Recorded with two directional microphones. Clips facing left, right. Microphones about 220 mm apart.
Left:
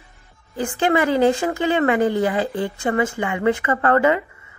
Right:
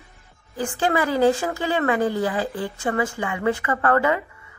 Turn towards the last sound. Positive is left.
turn(degrees=20)  # may be behind; listen again after turning